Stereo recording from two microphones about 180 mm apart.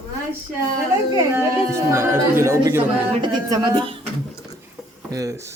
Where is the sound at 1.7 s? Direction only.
15° right (ahead or behind).